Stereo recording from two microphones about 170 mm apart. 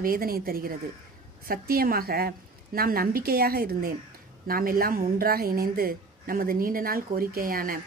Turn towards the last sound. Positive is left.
turn(degrees=-55)  # may be behind; listen again after turning